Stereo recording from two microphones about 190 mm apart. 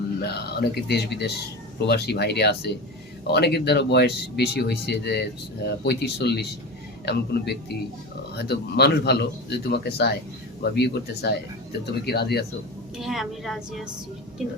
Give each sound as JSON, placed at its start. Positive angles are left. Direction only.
{"t": 0.2, "sound": "speech", "side_deg": 60}
{"t": 13.0, "sound": "a woman's voice", "side_deg": 0}